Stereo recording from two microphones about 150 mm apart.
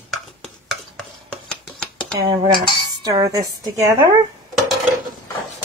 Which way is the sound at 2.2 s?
30° right (ahead or behind).